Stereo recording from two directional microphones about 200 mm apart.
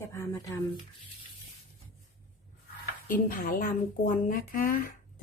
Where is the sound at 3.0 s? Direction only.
45° left (ahead or behind).